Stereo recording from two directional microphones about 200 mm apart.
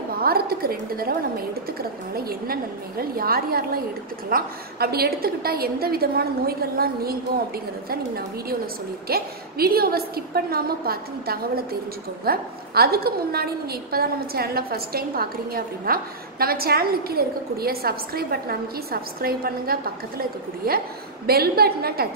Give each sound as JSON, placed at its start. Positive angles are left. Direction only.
{"t": 0.2, "sound": "a woman's voice", "side_deg": -50}
{"t": 9.0, "sound": "a woman's voice", "side_deg": -50}